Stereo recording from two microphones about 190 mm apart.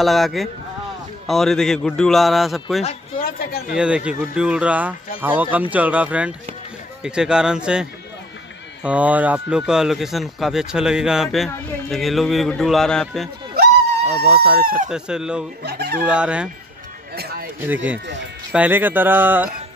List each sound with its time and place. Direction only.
0.0 s speech: centre (ahead or behind)
3.2 s speech: 50° left (ahead or behind)
3.7 s speech: 5° right (ahead or behind)
14.3 s speech: 10° right (ahead or behind)
15.6 s speech: 60° right (ahead or behind)
16.0 s speech: 5° right (ahead or behind)
17.1 s a sound: 55° right (ahead or behind)
18.5 s speech: 10° right (ahead or behind)